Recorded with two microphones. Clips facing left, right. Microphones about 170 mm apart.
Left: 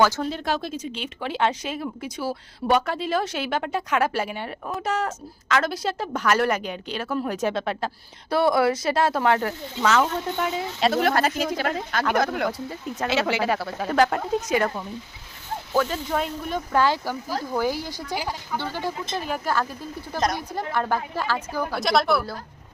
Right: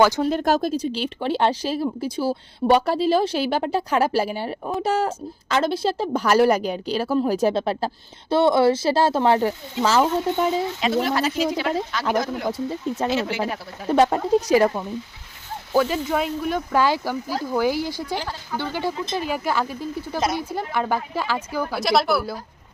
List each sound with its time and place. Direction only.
0.3 s speech: 45° right (ahead or behind); by 10.5 s 30° right (ahead or behind)
11.0 s speech: 55° left (ahead or behind)
12.1 s speech: 65° left (ahead or behind)
12.5 s speech: 25° right (ahead or behind)
13.1 s speech: 85° left
14.0 s speech: 30° right (ahead or behind)
15.7 s speech: 10° right (ahead or behind)
17.9 s speech: 10° left (ahead or behind)
18.5 s speech: 5° right (ahead or behind)